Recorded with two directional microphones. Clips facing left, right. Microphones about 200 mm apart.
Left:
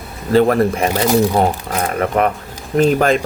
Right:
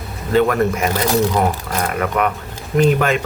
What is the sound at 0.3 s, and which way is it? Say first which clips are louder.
Speech: left 3 dB; 35° left (ahead or behind).